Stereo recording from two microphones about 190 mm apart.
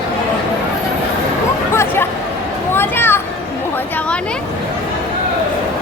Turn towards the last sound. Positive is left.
turn(degrees=5)  # may be behind; listen again after turning